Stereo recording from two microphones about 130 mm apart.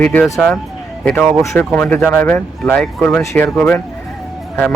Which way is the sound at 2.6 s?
Centre (ahead or behind).